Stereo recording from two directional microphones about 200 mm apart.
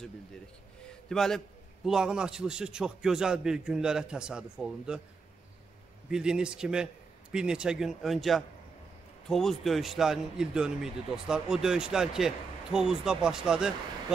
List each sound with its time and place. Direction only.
1.0 s a man's voice: centre (ahead or behind)
6.0 s a man's voice: 5° right (ahead or behind)